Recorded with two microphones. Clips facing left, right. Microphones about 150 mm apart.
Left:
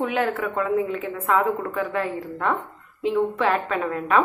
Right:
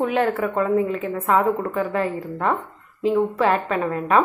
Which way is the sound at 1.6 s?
30° right (ahead or behind).